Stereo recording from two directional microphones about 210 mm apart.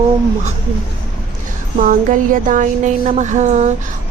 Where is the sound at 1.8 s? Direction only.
40° right (ahead or behind).